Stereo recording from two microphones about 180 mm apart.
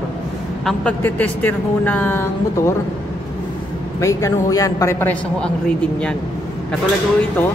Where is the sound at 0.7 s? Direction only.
5° left (ahead or behind).